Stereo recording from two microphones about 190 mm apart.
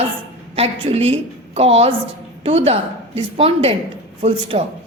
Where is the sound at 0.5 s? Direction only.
30° right (ahead or behind).